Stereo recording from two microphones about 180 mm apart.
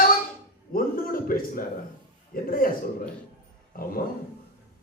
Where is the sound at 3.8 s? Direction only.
50° left (ahead or behind).